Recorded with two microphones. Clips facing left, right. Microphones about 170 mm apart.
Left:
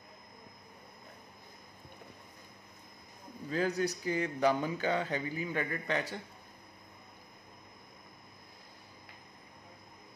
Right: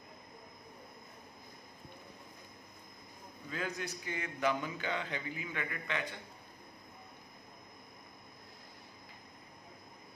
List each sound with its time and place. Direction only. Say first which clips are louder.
3.4 s a man's voice: left 8 dB; 35° left (ahead or behind)